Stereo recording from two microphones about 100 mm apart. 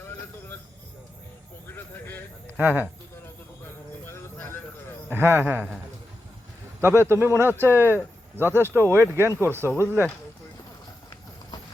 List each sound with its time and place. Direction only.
0.0 s a sound: 25° left (ahead or behind)
1.7 s a sound: 20° left (ahead or behind)
2.5 s speech: 20° right (ahead or behind)
3.6 s music: 25° left (ahead or behind)
5.0 s a man's voice: 25° right (ahead or behind)
6.8 s a man's voice: 25° right (ahead or behind)